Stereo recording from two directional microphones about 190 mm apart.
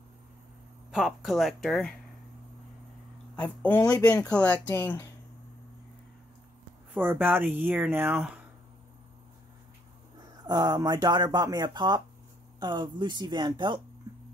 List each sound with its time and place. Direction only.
0.9 s speech: centre (ahead or behind)
3.3 s speech: 10° left (ahead or behind)
6.9 s speech: 10° right (ahead or behind)
10.4 s speech: 20° right (ahead or behind)